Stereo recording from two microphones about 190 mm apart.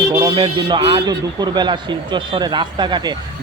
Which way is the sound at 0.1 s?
20° right (ahead or behind).